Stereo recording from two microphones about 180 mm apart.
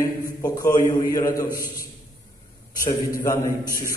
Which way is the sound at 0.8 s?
20° left (ahead or behind).